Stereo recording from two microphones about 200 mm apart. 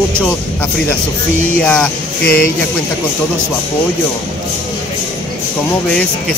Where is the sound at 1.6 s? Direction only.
5° left (ahead or behind).